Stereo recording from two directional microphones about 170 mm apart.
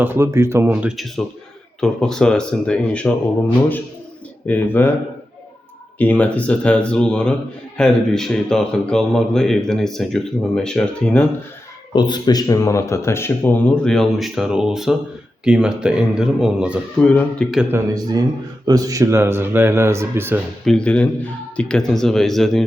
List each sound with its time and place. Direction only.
0.0 s speech: 15° right (ahead or behind); by 3.1 s 5° left (ahead or behind)
4.4 s speech: 10° left (ahead or behind)
6.0 s speech: 10° left (ahead or behind)
11.9 s speech: 25° left (ahead or behind); by 16.8 s 5° right (ahead or behind)
17.0 s speech: 5° left (ahead or behind)
17.7 s speech: 20° right (ahead or behind)
20.7 s speech: 5° left (ahead or behind)